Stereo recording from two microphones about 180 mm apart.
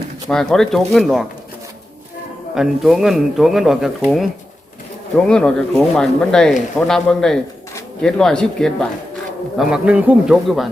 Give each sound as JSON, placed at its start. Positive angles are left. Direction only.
{"t": 0.3, "sound": "speech", "side_deg": 5}
{"t": 2.6, "sound": "speech", "side_deg": 0}